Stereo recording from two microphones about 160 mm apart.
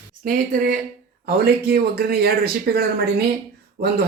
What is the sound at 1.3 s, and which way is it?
Speech, 75° right (ahead or behind).